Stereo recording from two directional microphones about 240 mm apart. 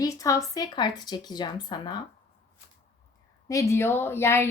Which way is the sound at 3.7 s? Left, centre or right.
Centre.